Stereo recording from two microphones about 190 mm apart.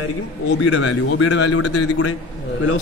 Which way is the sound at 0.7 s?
85° left.